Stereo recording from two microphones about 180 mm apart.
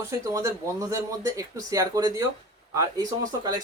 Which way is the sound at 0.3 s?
20° right (ahead or behind).